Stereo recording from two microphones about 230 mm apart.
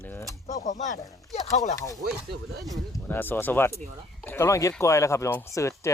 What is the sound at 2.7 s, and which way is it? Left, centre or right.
Speech, centre.